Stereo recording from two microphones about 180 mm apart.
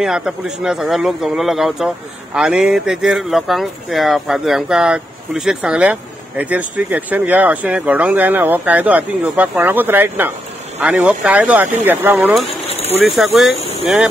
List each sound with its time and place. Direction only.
0.0 s speech: 5° right (ahead or behind)